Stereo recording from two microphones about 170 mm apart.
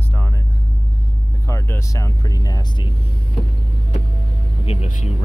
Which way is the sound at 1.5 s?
15° left (ahead or behind).